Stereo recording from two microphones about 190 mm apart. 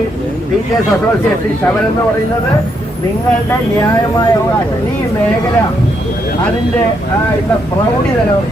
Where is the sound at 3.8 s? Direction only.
15° left (ahead or behind).